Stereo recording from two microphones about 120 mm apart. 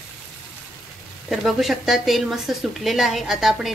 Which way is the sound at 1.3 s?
Centre (ahead or behind).